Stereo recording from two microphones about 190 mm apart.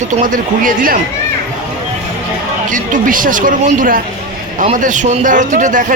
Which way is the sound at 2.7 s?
45° right (ahead or behind).